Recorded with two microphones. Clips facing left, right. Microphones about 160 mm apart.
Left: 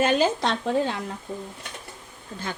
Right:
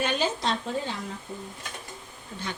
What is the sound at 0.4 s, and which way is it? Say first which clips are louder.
Speech: left 5 dB; 55° left (ahead or behind).